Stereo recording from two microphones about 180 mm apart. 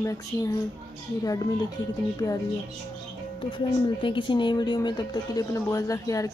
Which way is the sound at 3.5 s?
25° left (ahead or behind).